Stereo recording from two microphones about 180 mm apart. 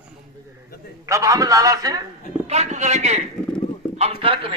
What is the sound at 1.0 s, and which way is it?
Speech, 15° right (ahead or behind).